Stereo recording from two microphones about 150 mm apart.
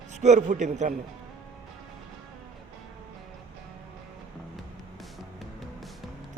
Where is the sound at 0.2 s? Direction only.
50° right (ahead or behind).